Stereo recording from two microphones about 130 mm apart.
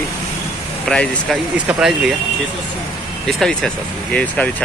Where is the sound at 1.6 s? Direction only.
10° right (ahead or behind).